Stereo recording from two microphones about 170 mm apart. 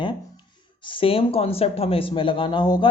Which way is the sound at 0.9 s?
30° left (ahead or behind).